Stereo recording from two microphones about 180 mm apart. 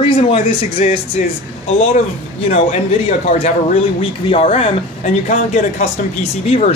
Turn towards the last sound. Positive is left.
turn(degrees=40)  # may be behind; listen again after turning